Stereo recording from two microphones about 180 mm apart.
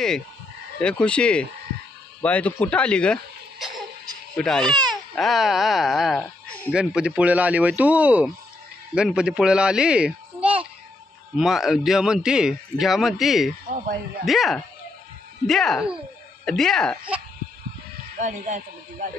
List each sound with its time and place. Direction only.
0.7 s a man's voice: 5° left (ahead or behind)
4.6 s speech: 25° right (ahead or behind)
4.9 s a child's voice: centre (ahead or behind)
13.7 s speech: 55° right (ahead or behind)
14.2 s a man's voice: centre (ahead or behind)
18.1 s speech: 45° right (ahead or behind)